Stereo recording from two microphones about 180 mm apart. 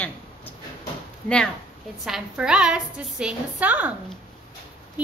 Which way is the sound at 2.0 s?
5° right (ahead or behind).